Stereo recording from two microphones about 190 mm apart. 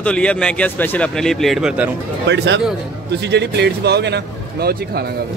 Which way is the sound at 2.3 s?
70° right (ahead or behind).